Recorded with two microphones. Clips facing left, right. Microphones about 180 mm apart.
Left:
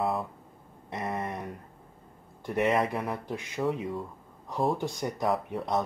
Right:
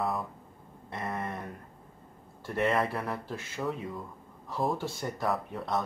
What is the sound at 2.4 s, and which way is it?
Speech, 15° left (ahead or behind).